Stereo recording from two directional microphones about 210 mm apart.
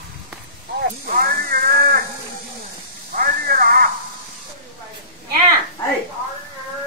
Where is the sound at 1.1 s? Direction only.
45° right (ahead or behind).